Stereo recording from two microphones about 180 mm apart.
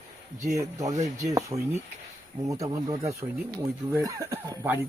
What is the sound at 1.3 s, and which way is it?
Speech, 20° right (ahead or behind).